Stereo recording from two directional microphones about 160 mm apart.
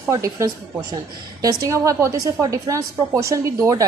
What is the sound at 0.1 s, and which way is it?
A woman's voice, 20° right (ahead or behind).